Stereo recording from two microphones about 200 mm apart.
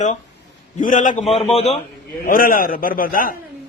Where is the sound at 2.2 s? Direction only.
45° left (ahead or behind).